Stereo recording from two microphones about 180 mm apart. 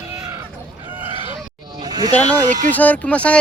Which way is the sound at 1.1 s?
30° right (ahead or behind).